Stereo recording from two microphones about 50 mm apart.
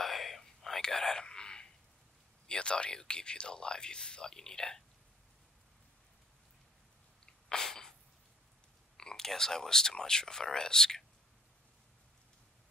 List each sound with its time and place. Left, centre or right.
0.0 s whispering: centre
1.2 s a sound: centre
2.4 s speech: centre
7.4 s sneeze: centre
8.9 s speech: centre